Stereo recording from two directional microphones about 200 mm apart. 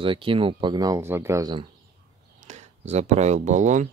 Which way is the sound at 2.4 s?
35° right (ahead or behind).